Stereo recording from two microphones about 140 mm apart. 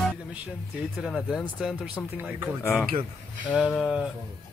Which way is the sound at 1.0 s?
5° right (ahead or behind).